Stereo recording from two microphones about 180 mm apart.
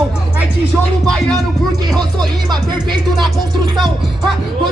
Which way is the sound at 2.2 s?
25° right (ahead or behind).